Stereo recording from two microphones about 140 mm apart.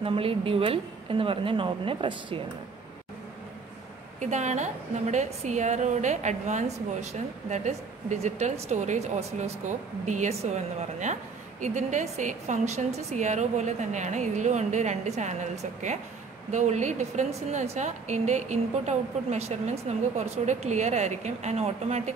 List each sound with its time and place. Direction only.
0.0 s a woman's voice: 40° right (ahead or behind)
4.2 s a woman's voice: 55° right (ahead or behind)